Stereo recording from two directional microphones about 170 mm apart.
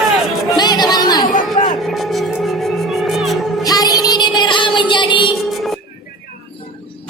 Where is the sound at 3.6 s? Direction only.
20° left (ahead or behind).